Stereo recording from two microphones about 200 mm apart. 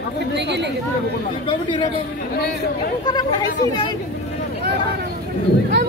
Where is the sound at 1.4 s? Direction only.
25° left (ahead or behind).